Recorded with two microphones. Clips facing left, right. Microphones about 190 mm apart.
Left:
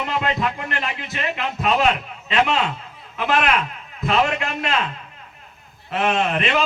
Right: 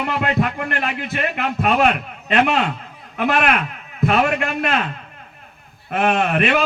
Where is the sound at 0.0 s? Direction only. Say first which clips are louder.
Right 3 dB; 55° right (ahead or behind).